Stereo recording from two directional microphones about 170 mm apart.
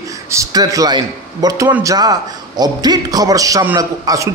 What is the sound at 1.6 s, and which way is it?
Speech, 10° right (ahead or behind).